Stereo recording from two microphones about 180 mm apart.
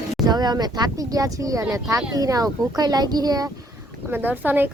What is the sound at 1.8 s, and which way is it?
Speech, 20° right (ahead or behind).